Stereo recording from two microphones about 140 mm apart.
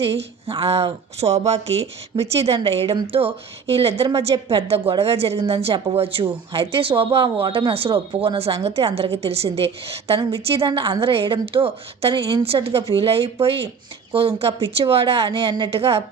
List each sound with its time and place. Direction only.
0.0 s speech: 40° right (ahead or behind)